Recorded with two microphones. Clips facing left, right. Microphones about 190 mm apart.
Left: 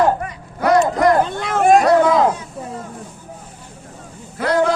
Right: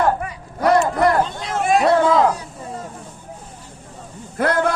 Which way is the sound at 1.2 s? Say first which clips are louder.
Left 4 dB; 60° left (ahead or behind).